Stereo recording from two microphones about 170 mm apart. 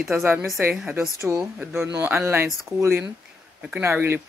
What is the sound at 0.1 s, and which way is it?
Speech, 10° right (ahead or behind).